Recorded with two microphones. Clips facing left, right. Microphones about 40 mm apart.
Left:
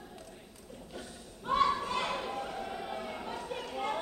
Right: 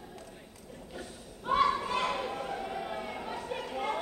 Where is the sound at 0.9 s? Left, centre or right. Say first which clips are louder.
Right 2 dB; centre.